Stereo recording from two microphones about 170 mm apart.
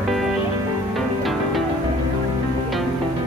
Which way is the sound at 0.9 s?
Centre (ahead or behind).